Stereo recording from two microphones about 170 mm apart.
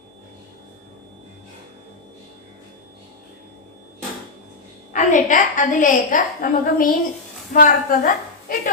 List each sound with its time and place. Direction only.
4.9 s a woman's voice: 50° left (ahead or behind)